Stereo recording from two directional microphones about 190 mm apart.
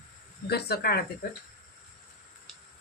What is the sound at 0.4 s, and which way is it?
Speech, 55° left (ahead or behind).